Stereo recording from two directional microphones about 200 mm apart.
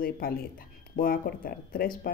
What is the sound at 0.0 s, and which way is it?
A woman's voice, 45° left (ahead or behind).